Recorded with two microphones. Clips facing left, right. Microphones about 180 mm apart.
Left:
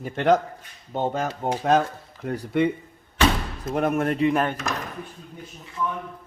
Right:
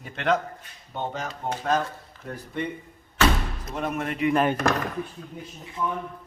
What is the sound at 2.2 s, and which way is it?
Speech, 80° left.